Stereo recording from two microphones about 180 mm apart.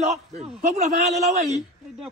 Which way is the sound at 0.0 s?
40° right (ahead or behind).